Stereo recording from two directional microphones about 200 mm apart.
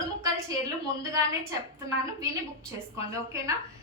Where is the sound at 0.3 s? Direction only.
15° right (ahead or behind).